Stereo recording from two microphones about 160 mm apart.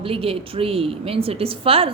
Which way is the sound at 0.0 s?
35° right (ahead or behind).